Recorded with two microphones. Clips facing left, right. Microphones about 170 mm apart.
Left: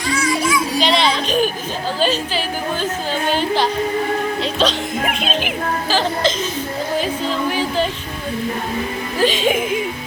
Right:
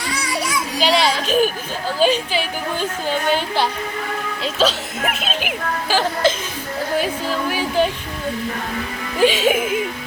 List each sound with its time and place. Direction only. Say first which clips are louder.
0.1 s music: left 6 dB; 35° right (ahead or behind)
0.8 s child singing: right 3 dB; 5° right (ahead or behind)
3.1 s speech: left 1 dB; 10° right (ahead or behind)
7.0 s a sound: left 1 dB; 10° right (ahead or behind)
9.2 s speech: right 1 dB; 5° right (ahead or behind)